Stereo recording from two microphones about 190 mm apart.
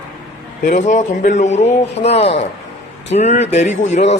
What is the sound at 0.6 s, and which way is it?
A man's voice, 40° left (ahead or behind).